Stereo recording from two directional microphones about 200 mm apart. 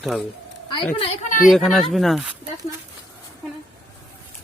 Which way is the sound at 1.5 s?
Centre (ahead or behind).